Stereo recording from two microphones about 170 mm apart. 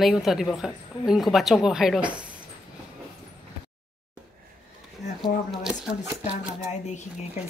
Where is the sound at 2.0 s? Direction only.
30° right (ahead or behind).